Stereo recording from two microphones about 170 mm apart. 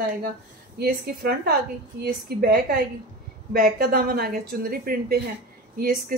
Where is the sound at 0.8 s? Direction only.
65° right (ahead or behind).